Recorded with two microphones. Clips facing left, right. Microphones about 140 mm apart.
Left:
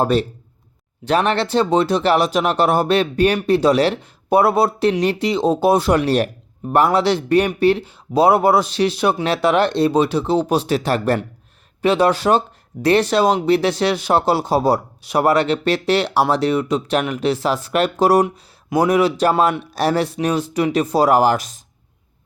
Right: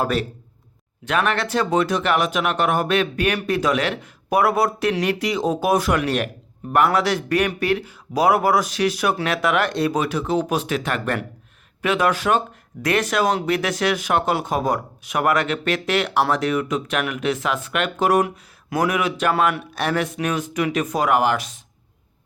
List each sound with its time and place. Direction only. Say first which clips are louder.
0.0 s speech: left 5 dB; 30° left (ahead or behind)